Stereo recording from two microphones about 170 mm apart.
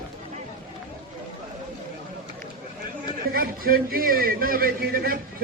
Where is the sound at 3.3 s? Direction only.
60° right (ahead or behind).